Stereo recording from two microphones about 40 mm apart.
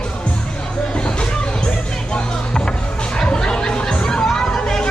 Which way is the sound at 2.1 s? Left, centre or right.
Left.